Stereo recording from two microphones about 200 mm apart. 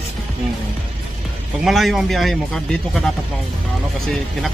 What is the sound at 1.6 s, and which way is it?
Speech, centre (ahead or behind).